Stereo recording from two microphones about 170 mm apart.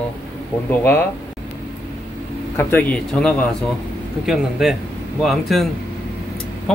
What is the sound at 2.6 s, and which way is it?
Speech, 10° left (ahead or behind).